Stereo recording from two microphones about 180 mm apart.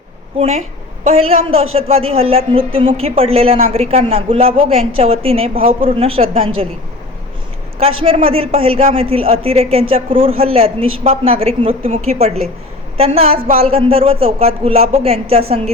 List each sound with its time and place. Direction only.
0.3 s a man's voice: 35° right (ahead or behind)
7.8 s a man's voice: 35° right (ahead or behind)